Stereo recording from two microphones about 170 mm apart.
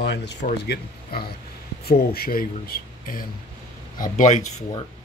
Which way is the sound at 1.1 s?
65° left (ahead or behind).